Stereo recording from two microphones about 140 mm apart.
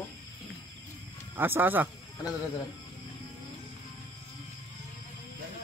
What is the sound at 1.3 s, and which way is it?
Speech, 15° right (ahead or behind).